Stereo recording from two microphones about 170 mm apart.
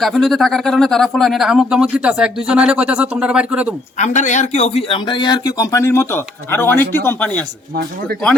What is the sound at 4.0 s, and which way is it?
A man's voice, 45° left (ahead or behind).